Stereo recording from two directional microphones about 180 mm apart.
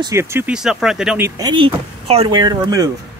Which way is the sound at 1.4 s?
25° right (ahead or behind).